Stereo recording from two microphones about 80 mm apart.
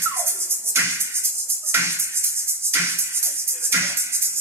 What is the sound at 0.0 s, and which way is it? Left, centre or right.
Music, right.